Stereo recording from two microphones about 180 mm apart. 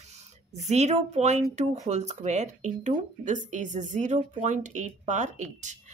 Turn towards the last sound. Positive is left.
turn(degrees=-40)  # may be behind; listen again after turning